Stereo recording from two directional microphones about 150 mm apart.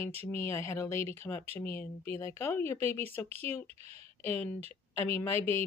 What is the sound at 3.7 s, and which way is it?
Speech, 45° right (ahead or behind).